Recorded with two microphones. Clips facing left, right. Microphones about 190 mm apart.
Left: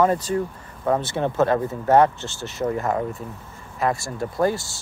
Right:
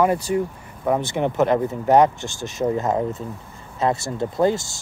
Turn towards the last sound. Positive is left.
turn(degrees=-20)  # may be behind; listen again after turning